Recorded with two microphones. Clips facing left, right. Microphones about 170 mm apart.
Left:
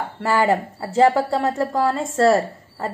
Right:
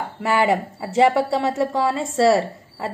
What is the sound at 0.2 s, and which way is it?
A woman's voice, centre (ahead or behind).